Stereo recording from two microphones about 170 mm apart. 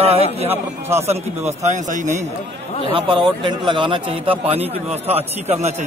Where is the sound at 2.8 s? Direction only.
30° right (ahead or behind).